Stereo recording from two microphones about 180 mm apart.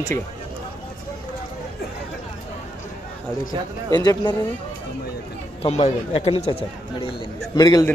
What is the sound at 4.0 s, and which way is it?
Speech, 25° left (ahead or behind).